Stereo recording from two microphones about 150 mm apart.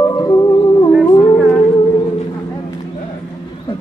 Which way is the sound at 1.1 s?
20° left (ahead or behind).